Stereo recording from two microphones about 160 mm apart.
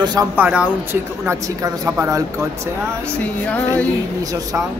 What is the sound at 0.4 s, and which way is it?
Speech, 5° right (ahead or behind).